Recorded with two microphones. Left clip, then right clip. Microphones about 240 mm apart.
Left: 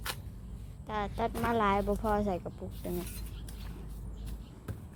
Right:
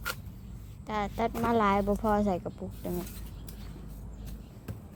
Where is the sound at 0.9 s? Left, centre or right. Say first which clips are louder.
Right 3 dB; centre.